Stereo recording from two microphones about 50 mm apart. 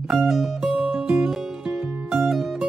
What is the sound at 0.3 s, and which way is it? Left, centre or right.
Music, centre.